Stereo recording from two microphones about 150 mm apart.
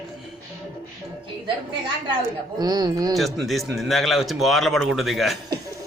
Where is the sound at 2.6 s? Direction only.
25° right (ahead or behind).